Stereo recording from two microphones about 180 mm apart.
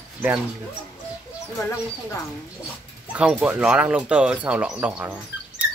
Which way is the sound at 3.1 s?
5° right (ahead or behind).